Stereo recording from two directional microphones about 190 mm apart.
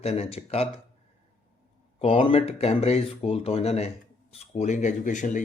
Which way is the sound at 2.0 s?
30° left (ahead or behind).